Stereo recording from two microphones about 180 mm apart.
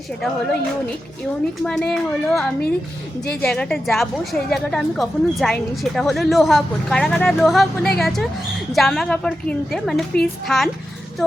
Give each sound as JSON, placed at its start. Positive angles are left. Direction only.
{"t": 1.6, "sound": "a woman's voice", "side_deg": 5}